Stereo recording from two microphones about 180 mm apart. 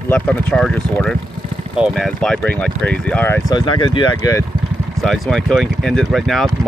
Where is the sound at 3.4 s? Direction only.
25° left (ahead or behind).